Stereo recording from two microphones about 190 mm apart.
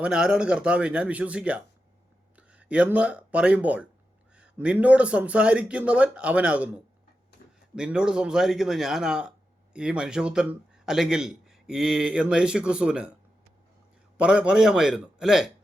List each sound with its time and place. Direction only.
0.0 s a man's voice: 5° right (ahead or behind)
7.4 s a sound: 55° left (ahead or behind)
7.8 s a man's voice: 5° right (ahead or behind)
14.2 s a man's voice: 5° right (ahead or behind)